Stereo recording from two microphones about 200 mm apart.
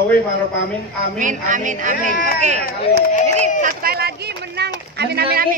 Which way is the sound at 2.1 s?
50° left (ahead or behind).